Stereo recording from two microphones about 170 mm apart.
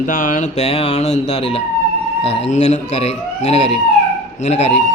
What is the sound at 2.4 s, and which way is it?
Speech, 45° left (ahead or behind).